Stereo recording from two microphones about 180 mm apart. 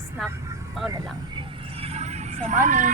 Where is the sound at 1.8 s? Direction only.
35° right (ahead or behind).